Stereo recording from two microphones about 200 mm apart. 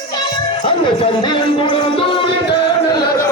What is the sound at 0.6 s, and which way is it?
Speech, 25° left (ahead or behind).